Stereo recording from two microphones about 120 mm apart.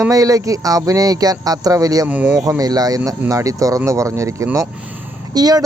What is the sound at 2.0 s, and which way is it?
Speech, 10° right (ahead or behind).